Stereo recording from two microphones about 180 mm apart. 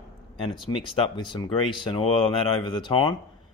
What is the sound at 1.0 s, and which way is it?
A man's voice, 25° left (ahead or behind).